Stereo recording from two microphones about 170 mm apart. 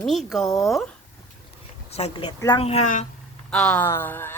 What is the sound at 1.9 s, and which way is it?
Speech, 40° left (ahead or behind).